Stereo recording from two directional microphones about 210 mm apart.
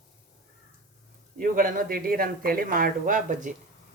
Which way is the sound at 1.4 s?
40° right (ahead or behind).